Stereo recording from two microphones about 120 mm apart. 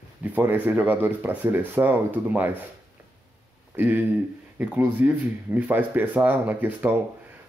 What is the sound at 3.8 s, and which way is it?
Speech, 15° right (ahead or behind).